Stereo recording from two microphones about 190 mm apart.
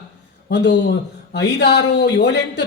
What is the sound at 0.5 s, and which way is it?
Speech, 60° left (ahead or behind).